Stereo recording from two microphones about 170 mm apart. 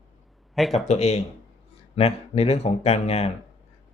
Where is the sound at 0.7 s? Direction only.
40° left (ahead or behind).